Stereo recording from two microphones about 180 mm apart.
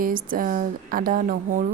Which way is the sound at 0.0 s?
50° right (ahead or behind).